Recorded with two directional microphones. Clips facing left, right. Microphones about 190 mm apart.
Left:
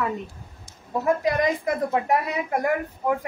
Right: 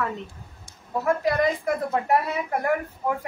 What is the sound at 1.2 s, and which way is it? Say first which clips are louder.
Speech: even; 15° left (ahead or behind).